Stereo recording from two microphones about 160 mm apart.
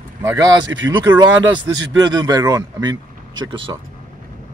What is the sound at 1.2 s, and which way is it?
A man's voice, 25° right (ahead or behind).